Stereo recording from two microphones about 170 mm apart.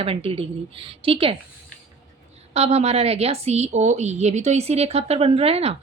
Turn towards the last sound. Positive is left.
turn(degrees=-35)  # may be behind; listen again after turning